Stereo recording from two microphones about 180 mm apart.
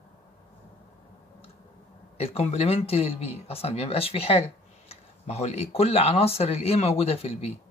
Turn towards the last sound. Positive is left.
turn(degrees=35)  # may be behind; listen again after turning